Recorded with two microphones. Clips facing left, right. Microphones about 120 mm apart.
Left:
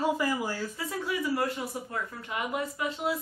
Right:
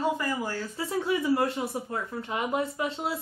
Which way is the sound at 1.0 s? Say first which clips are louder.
Right 4 dB; 25° right (ahead or behind).